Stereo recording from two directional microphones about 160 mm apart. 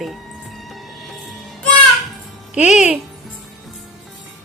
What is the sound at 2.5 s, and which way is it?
Speech, 10° right (ahead or behind).